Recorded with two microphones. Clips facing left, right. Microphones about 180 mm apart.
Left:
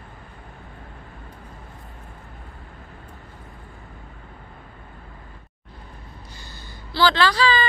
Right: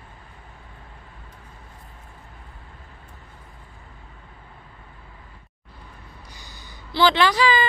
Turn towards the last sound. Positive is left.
turn(degrees=-15)  # may be behind; listen again after turning